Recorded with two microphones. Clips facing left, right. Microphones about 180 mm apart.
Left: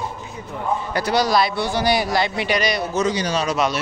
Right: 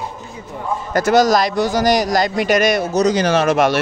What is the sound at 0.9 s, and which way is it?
A man's voice, 45° right (ahead or behind).